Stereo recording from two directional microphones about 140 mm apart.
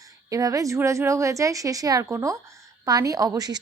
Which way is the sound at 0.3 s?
25° right (ahead or behind).